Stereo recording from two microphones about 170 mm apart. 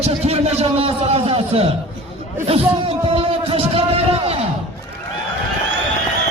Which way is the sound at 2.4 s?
35° right (ahead or behind).